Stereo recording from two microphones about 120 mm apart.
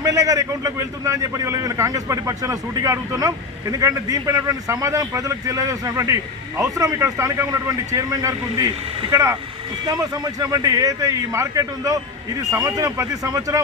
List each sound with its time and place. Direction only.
0.0 s a man's voice: 30° right (ahead or behind)